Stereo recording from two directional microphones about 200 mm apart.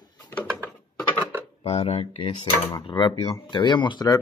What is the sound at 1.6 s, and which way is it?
Speech, 30° left (ahead or behind).